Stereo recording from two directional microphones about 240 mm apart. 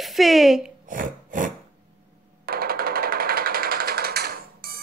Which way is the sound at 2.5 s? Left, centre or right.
Right.